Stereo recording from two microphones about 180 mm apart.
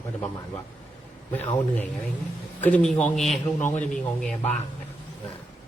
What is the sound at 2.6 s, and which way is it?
A man's voice, 5° left (ahead or behind).